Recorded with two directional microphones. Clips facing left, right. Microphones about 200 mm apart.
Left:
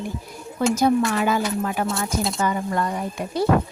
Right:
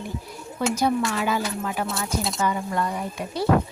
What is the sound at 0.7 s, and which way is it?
Speech, 45° left (ahead or behind).